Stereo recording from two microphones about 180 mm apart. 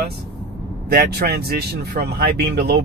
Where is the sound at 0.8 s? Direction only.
60° right (ahead or behind).